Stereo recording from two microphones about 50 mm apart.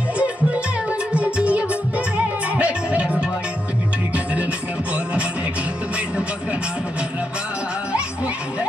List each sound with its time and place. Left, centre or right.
1.1 s music: right